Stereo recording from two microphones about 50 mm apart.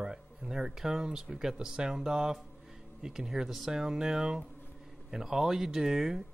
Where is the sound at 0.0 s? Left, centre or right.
Centre.